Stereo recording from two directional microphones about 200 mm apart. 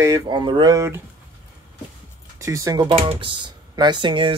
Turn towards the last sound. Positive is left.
turn(degrees=-25)  # may be behind; listen again after turning